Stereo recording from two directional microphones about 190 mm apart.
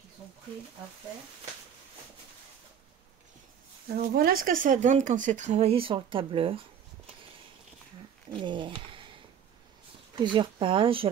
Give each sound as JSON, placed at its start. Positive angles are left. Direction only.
{"t": 3.9, "sound": "speech", "side_deg": -50}
{"t": 8.4, "sound": "speech", "side_deg": -25}
{"t": 10.1, "sound": "speech", "side_deg": -25}